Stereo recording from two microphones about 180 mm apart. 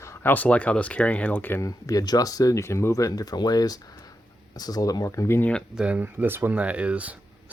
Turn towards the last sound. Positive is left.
turn(degrees=-5)  # may be behind; listen again after turning